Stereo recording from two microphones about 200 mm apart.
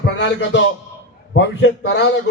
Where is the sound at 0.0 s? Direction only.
60° left (ahead or behind).